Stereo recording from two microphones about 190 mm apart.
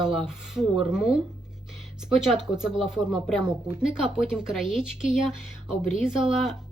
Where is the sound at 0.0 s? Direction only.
Centre (ahead or behind).